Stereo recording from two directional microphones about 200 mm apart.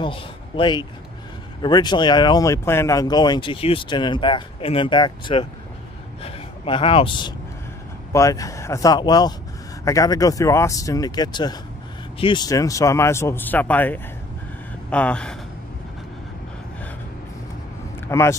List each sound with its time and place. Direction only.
0.0 s a man's voice: 25° left (ahead or behind); by 15.3 s 5° left (ahead or behind)
18.0 s speech: 15° left (ahead or behind)